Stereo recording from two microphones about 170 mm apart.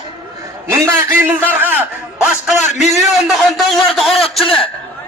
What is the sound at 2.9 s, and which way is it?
A man's voice, centre (ahead or behind).